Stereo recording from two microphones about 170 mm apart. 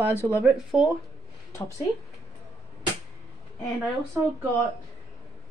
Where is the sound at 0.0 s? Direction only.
15° right (ahead or behind).